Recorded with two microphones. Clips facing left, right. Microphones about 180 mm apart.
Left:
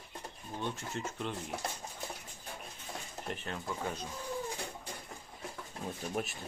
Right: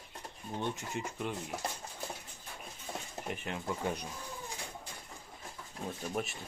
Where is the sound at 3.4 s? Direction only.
15° right (ahead or behind).